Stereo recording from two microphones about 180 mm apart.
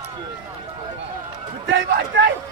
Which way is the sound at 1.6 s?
90° right.